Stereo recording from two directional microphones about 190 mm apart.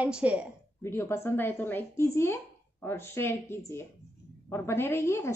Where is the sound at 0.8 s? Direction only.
15° left (ahead or behind).